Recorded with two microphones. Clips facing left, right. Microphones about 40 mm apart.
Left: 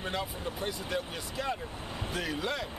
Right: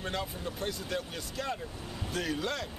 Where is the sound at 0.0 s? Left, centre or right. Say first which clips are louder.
Left 1 dB; centre.